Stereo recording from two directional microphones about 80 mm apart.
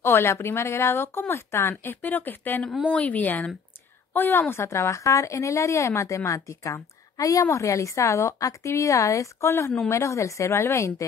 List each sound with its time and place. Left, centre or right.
0.0 s a woman's voice: left